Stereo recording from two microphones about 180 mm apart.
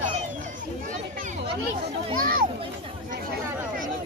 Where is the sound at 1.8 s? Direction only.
50° right (ahead or behind).